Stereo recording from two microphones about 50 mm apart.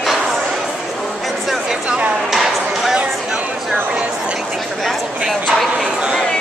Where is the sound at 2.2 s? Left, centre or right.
Centre.